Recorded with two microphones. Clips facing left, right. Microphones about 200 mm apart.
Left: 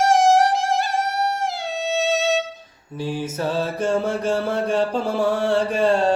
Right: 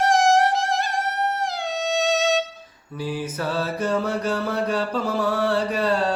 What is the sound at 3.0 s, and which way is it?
Mantra, 25° left (ahead or behind).